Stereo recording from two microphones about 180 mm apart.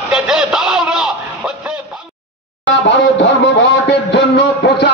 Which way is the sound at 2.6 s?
75° left (ahead or behind).